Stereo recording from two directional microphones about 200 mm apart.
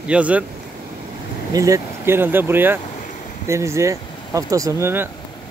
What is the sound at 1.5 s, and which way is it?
Speech, 15° right (ahead or behind).